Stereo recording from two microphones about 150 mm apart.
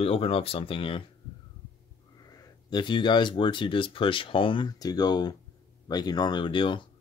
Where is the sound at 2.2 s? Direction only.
25° left (ahead or behind).